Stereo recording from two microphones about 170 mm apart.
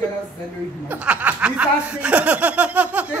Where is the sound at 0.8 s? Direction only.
10° right (ahead or behind).